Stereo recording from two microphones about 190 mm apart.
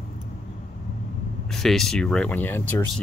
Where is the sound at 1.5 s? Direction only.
Centre (ahead or behind).